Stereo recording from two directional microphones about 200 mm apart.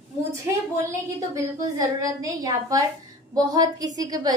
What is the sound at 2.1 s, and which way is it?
A woman's voice, 15° right (ahead or behind).